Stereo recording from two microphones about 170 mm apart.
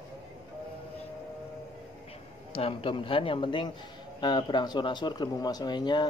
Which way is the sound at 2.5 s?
30° left (ahead or behind).